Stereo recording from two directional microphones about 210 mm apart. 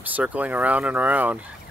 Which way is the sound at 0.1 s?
5° right (ahead or behind).